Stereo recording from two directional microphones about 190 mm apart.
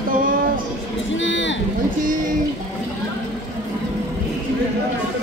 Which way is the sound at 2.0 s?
45° right (ahead or behind).